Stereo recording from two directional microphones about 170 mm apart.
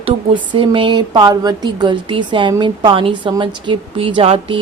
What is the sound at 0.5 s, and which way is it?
Speech, 30° right (ahead or behind).